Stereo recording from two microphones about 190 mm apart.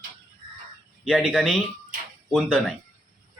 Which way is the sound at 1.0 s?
5° left (ahead or behind).